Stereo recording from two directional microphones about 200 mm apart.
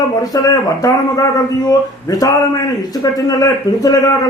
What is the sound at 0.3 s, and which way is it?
Speech, 20° left (ahead or behind).